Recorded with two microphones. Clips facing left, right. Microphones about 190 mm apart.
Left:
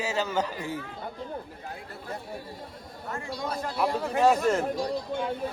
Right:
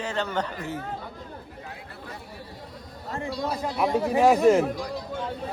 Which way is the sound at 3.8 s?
5° right (ahead or behind).